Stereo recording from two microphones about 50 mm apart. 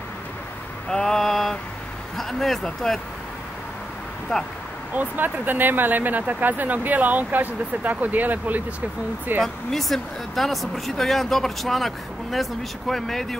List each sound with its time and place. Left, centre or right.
0.8 s a sound: centre
2.1 s speech: centre
4.3 s speech: centre
4.9 s speech: right
9.4 s speech: centre